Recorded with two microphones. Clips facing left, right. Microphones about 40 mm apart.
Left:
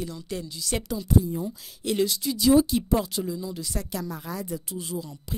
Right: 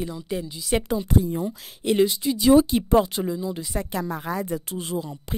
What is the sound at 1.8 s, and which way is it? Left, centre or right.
Speech, right.